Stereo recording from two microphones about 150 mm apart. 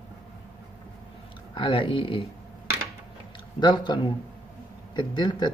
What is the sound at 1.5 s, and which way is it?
Speech, 35° left (ahead or behind).